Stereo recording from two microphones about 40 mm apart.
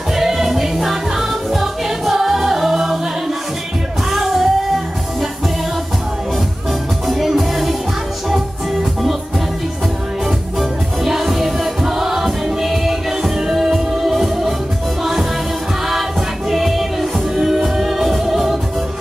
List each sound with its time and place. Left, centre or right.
0.1 s music: centre
4.1 s music: centre
7.1 s music: centre
10.6 s music: centre
15.9 s music: centre